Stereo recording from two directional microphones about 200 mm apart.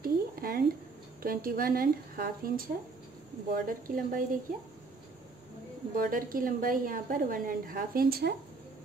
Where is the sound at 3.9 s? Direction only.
45° right (ahead or behind).